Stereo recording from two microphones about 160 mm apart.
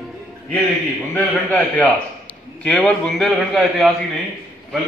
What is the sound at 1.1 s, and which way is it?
A man's voice, 10° left (ahead or behind).